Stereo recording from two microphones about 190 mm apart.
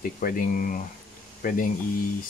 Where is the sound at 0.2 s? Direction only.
45° left (ahead or behind).